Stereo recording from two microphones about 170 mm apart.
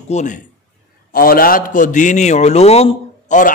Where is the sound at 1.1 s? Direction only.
60° left (ahead or behind).